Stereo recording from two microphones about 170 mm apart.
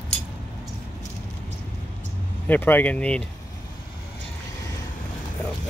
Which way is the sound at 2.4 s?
10° left (ahead or behind).